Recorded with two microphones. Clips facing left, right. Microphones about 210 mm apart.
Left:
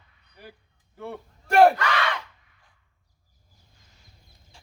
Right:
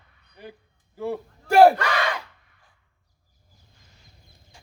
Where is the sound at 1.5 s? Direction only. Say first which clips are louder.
Right 2 dB; 30° right (ahead or behind).